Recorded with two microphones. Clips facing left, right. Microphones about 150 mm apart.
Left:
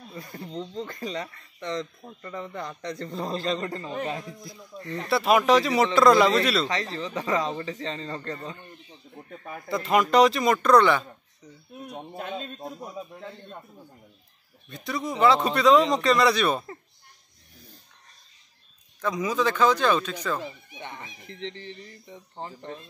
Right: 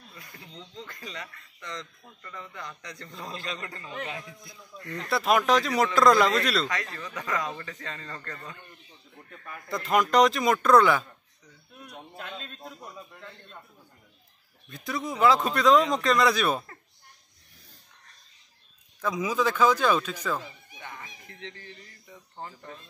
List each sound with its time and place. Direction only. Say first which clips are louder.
0.1 s speech: left 12 dB; 35° left (ahead or behind)
5.1 s a man's voice: left 3 dB; 5° left (ahead or behind)
6.7 s speech: left 5 dB; 30° left (ahead or behind)
9.7 s a man's voice: left 2 dB; 5° left (ahead or behind)
11.8 s speech: left 6 dB; 45° left (ahead or behind)
14.7 s a man's voice: left 2 dB; centre (ahead or behind)
18.9 s a man's voice: left 1 dB; 5° right (ahead or behind)
20.8 s speech: left 3 dB; 25° left (ahead or behind)